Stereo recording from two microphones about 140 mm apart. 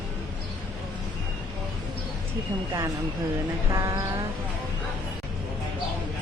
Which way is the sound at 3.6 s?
20° right (ahead or behind).